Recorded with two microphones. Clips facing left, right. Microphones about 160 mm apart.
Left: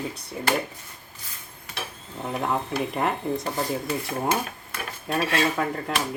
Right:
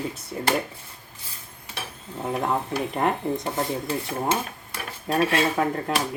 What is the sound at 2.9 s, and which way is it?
Speech, centre (ahead or behind).